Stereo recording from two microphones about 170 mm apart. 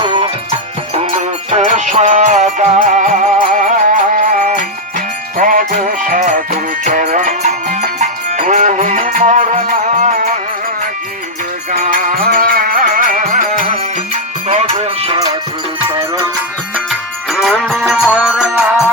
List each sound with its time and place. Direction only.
0.0 s music: 25° right (ahead or behind)
1.5 s music: 40° right (ahead or behind)
11.8 s music: 50° right (ahead or behind)
16.7 s music: centre (ahead or behind)